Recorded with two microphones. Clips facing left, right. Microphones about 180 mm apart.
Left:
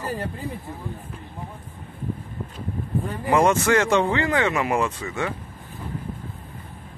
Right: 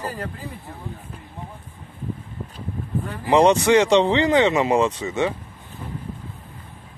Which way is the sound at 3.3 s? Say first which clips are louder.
Right 4 dB; 20° right (ahead or behind).